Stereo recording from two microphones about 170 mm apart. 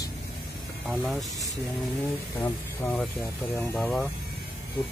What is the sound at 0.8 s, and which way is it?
Speech, centre (ahead or behind).